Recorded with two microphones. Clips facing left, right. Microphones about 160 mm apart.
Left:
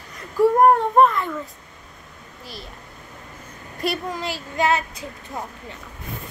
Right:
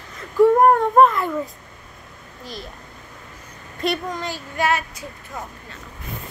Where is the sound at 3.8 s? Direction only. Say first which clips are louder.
Right 1 dB; 5° left (ahead or behind).